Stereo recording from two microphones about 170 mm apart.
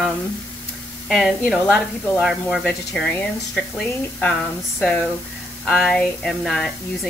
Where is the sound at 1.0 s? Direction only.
Centre (ahead or behind).